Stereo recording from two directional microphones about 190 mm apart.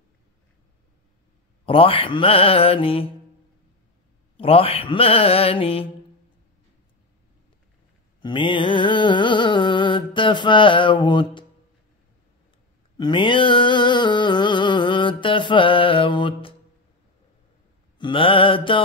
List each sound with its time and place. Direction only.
1.7 s music: 30° left (ahead or behind)
4.4 s music: 30° left (ahead or behind)
8.2 s music: 25° left (ahead or behind)
12.9 s a sound: 25° left (ahead or behind)
17.9 s music: 25° left (ahead or behind)